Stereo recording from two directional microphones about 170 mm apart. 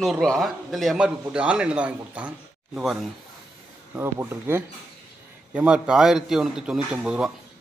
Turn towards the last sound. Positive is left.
turn(degrees=-5)  # may be behind; listen again after turning